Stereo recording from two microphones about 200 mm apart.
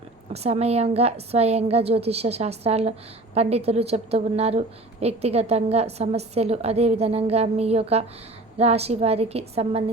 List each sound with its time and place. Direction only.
0.3 s a woman's voice: 30° right (ahead or behind)